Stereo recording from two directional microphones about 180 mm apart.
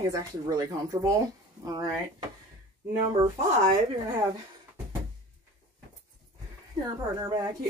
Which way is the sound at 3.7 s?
20° right (ahead or behind).